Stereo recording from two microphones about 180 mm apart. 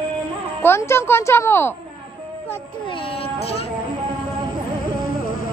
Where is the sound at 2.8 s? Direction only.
30° left (ahead or behind).